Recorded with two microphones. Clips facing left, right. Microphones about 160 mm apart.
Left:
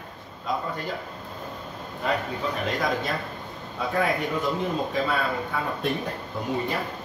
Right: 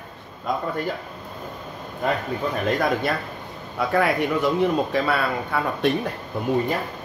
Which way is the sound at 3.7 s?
75° right (ahead or behind).